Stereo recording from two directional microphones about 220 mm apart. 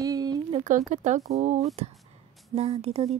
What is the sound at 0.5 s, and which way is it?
A woman's voice, 35° right (ahead or behind).